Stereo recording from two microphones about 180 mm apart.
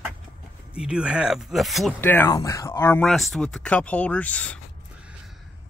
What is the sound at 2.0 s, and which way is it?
Speech, 10° left (ahead or behind).